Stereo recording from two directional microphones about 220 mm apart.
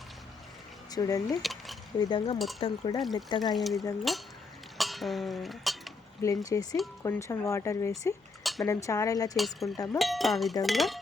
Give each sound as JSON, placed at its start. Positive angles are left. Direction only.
{"t": 0.9, "sound": "speech", "side_deg": 15}
{"t": 1.4, "sound": "speech", "side_deg": 0}
{"t": 2.0, "sound": "speech", "side_deg": 20}
{"t": 3.0, "sound": "speech", "side_deg": 0}
{"t": 4.8, "sound": "dishes", "side_deg": 0}
{"t": 6.2, "sound": "speech", "side_deg": 15}
{"t": 9.3, "sound": "speech", "side_deg": 0}
{"t": 9.7, "sound": "speech", "side_deg": 15}
{"t": 10.0, "sound": "speech", "side_deg": 0}